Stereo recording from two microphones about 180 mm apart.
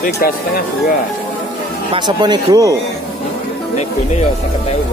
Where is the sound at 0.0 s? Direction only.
55° left (ahead or behind).